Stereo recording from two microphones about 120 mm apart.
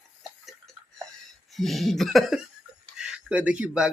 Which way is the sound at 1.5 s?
Centre (ahead or behind).